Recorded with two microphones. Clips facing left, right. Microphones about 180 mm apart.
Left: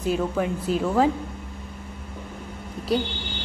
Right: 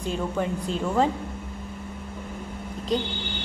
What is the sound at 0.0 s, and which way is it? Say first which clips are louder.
A woman's voice: left 3 dB; 5° left (ahead or behind).